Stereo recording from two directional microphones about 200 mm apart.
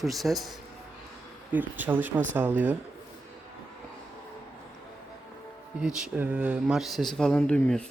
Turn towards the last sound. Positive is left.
turn(degrees=5)  # may be behind; listen again after turning